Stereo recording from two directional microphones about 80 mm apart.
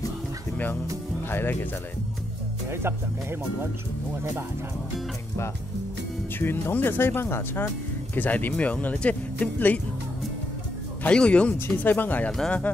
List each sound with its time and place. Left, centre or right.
1.3 s speech: left
2.7 s speech: right
6.4 s speech: left
11.1 s speech: centre
11.5 s speech: left
12.3 s speech: centre